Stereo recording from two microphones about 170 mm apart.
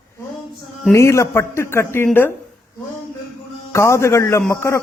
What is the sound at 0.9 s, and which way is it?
A man's voice, 15° left (ahead or behind).